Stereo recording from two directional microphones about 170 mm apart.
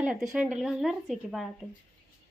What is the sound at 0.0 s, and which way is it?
Speech, 5° right (ahead or behind).